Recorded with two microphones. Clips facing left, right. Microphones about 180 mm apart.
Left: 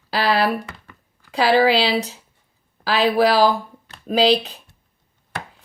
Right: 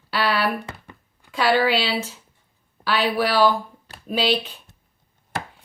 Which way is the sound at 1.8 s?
35° left (ahead or behind).